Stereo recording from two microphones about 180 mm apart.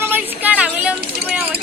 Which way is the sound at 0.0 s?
10° right (ahead or behind).